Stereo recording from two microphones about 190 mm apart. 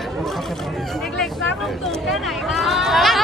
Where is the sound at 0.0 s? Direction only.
Centre (ahead or behind).